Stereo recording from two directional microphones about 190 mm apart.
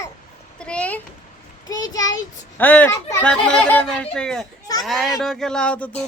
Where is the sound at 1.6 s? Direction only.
20° left (ahead or behind).